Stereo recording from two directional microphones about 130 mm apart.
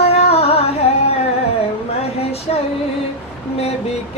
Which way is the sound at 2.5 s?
55° left (ahead or behind).